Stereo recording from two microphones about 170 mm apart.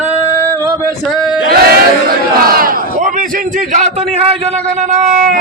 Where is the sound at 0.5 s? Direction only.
15° right (ahead or behind).